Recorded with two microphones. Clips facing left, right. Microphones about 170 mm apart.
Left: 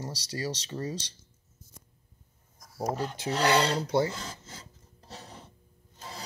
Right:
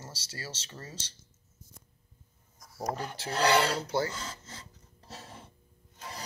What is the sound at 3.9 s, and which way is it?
Rub, 20° left (ahead or behind).